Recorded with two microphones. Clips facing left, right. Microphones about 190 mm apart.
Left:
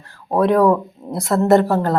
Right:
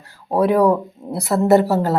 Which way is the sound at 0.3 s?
5° right (ahead or behind).